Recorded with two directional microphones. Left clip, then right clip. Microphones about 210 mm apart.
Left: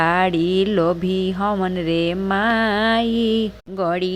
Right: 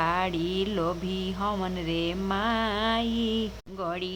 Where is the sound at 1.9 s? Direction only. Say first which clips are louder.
Left 8 dB; 30° left (ahead or behind).